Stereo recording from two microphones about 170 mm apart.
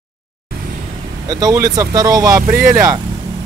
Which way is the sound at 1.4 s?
20° right (ahead or behind).